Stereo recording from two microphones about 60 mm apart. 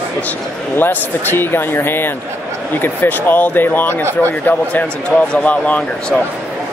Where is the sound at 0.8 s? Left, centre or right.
Left.